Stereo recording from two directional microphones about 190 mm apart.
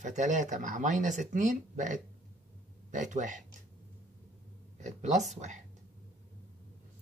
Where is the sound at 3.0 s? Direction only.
40° right (ahead or behind).